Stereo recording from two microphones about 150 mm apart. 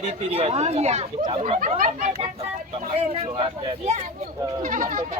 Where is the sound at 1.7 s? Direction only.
60° right (ahead or behind).